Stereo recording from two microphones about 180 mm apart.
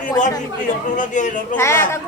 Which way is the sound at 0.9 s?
45° left (ahead or behind).